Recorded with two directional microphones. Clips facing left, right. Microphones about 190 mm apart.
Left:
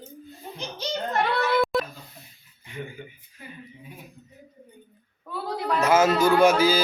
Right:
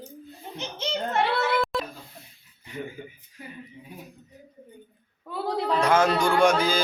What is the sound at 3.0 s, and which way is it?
Speech, 35° right (ahead or behind).